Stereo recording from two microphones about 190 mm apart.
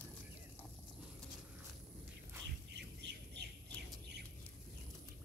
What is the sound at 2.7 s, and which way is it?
Bird, 65° right (ahead or behind).